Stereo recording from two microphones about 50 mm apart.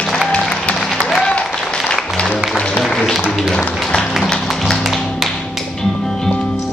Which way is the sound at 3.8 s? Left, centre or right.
Centre.